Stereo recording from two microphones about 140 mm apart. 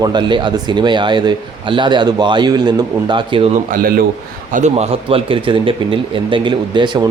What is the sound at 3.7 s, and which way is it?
Speech, 90° right.